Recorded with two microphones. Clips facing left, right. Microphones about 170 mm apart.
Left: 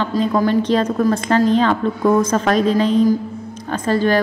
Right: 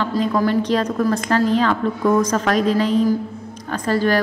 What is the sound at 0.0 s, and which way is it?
A woman's voice, 25° left (ahead or behind).